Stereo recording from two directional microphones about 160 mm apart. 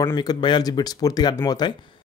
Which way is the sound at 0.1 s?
25° left (ahead or behind).